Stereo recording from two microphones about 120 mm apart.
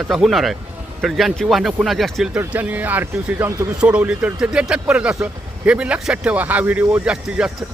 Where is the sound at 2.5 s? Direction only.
15° right (ahead or behind).